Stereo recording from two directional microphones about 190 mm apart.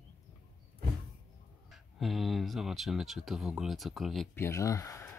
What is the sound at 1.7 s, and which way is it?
Speech, centre (ahead or behind).